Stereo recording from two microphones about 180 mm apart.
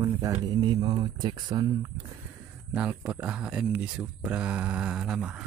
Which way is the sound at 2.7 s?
5° right (ahead or behind).